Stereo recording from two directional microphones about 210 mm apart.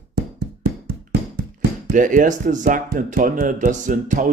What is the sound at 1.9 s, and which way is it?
A man's voice, 40° right (ahead or behind).